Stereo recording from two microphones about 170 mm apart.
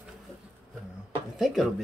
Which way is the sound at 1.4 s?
Centre (ahead or behind).